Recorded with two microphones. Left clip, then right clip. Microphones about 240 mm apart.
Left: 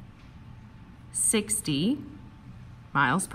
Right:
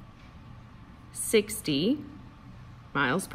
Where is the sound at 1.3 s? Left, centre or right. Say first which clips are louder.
Right 4 dB; centre.